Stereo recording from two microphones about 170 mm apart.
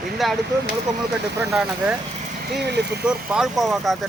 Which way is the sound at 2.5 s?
80° right.